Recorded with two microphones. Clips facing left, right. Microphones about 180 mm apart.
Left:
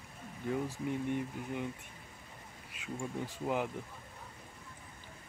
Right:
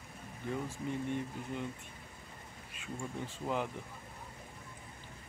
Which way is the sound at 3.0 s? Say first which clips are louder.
Left 2 dB; 10° left (ahead or behind).